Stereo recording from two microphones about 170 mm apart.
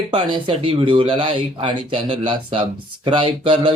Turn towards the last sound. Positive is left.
turn(degrees=-30)  # may be behind; listen again after turning